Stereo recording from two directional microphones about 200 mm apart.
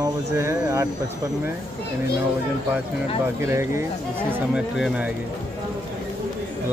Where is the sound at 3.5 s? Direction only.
15° right (ahead or behind).